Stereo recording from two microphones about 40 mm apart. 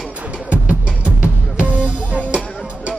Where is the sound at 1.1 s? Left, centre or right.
Right.